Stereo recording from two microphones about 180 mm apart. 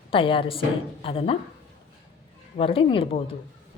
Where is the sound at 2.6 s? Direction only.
30° left (ahead or behind).